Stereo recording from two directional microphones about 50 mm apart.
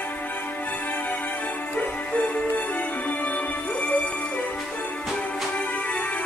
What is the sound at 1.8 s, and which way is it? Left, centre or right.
Music, left.